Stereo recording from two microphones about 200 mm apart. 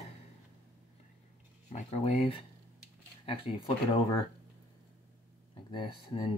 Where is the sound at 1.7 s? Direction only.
30° left (ahead or behind).